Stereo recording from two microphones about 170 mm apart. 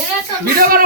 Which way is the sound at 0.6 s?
60° right (ahead or behind).